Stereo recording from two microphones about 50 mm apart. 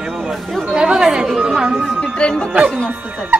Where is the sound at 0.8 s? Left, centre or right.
Centre.